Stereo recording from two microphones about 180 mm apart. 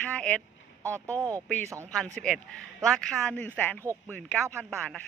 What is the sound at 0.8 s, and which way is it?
Speech, 15° right (ahead or behind).